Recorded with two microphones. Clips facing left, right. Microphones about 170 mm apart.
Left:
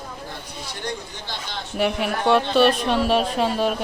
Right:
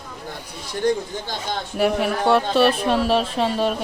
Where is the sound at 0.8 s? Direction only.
50° right (ahead or behind).